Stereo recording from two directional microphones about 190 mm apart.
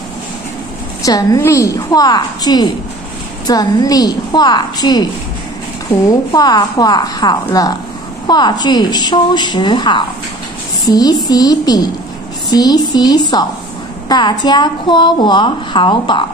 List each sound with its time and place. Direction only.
1.0 s a woman's voice: 20° left (ahead or behind)
6.0 s a woman's voice: 20° left (ahead or behind)